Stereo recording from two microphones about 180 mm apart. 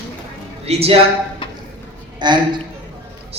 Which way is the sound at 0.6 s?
35° right (ahead or behind).